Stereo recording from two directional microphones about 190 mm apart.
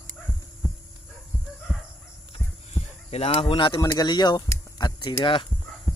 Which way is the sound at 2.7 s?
30° left (ahead or behind).